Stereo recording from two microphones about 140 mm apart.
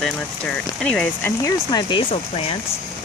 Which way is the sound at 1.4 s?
30° left (ahead or behind).